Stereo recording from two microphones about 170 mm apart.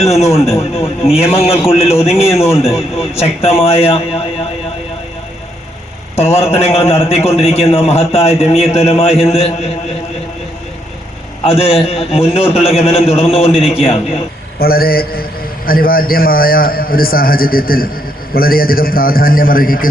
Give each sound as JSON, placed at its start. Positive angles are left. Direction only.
{"t": 0.0, "sound": "a man's voice", "side_deg": 40}
{"t": 2.3, "sound": "a man's voice", "side_deg": 15}
{"t": 2.6, "sound": "a man's voice", "side_deg": 0}
{"t": 3.2, "sound": "a man's voice", "side_deg": 35}
{"t": 6.3, "sound": "a man's voice", "side_deg": 35}
{"t": 11.4, "sound": "a man's voice", "side_deg": 35}
{"t": 14.6, "sound": "a man's voice", "side_deg": 60}